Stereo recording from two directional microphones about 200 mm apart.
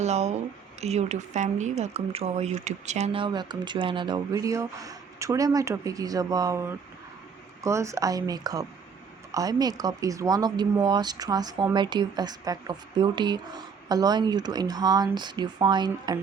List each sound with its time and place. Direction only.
0.0 s speech: 35° right (ahead or behind)